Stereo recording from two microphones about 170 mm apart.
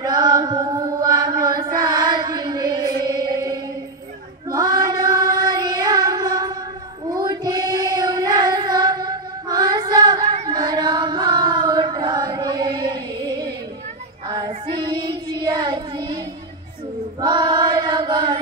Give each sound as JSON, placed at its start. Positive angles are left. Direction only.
{"t": 0.0, "sound": "chant", "side_deg": -25}
{"t": 1.4, "sound": "music", "side_deg": -25}
{"t": 4.5, "sound": "child singing", "side_deg": -25}
{"t": 10.4, "sound": "singing", "side_deg": -25}
{"t": 14.3, "sound": "child singing", "side_deg": -25}
{"t": 17.2, "sound": "child singing", "side_deg": -25}